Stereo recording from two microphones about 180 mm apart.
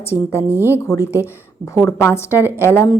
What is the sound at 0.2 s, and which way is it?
A woman's voice, 15° left (ahead or behind).